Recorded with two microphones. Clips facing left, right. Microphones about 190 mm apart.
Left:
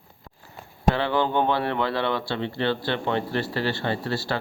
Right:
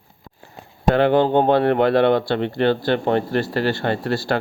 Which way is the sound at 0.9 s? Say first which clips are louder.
Right 11 dB; 50° right (ahead or behind).